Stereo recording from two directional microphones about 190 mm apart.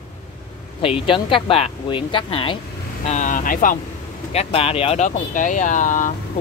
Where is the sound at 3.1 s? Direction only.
40° left (ahead or behind).